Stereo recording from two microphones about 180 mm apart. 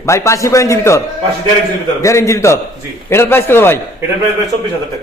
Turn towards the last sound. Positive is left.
turn(degrees=10)  # may be behind; listen again after turning